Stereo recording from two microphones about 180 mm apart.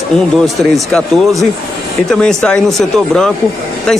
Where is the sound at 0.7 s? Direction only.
Centre (ahead or behind).